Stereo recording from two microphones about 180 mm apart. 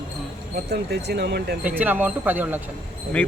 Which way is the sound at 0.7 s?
65° right (ahead or behind).